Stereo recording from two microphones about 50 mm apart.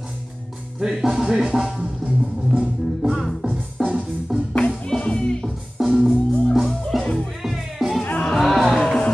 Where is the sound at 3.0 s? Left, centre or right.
Centre.